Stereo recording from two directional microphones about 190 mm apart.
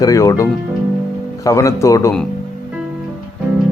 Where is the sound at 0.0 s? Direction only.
15° left (ahead or behind).